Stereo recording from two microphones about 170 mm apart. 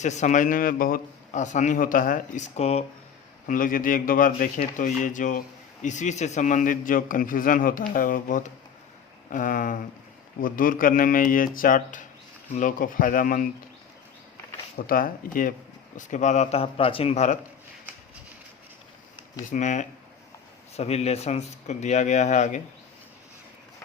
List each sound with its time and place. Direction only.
0.0 s a man's voice: 45° left (ahead or behind)
3.4 s a man's voice: 50° left (ahead or behind)
14.8 s a man's voice: 55° left (ahead or behind); by 17.3 s 40° left (ahead or behind)
19.5 s a man's voice: 45° left (ahead or behind)